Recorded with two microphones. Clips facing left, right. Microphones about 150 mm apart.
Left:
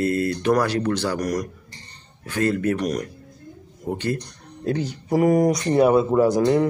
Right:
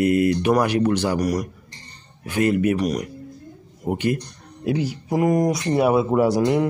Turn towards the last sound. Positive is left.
turn(degrees=-10)  # may be behind; listen again after turning